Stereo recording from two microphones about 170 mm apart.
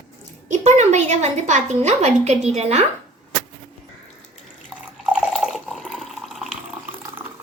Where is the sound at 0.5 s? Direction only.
40° right (ahead or behind).